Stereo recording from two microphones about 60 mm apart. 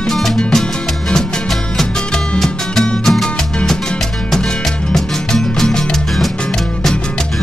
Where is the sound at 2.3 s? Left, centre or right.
Centre.